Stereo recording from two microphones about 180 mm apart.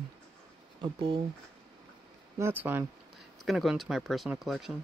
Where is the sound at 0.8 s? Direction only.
30° right (ahead or behind).